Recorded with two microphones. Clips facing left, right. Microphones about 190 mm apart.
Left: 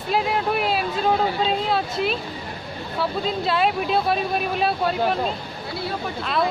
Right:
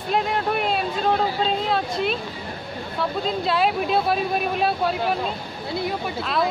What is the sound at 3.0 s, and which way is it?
Speech, centre (ahead or behind).